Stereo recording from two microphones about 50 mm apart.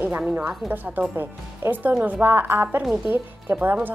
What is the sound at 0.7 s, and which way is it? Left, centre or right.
A woman's voice, right.